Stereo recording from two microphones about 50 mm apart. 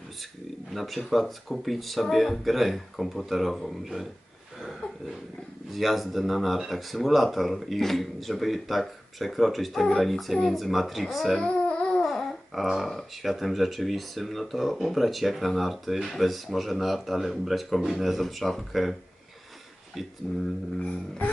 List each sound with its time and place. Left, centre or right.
0.7 s speech: centre
5.7 s speech: centre
11.4 s a sound: centre
12.0 s babbling: centre
12.8 s speech: centre
20.2 s speech: centre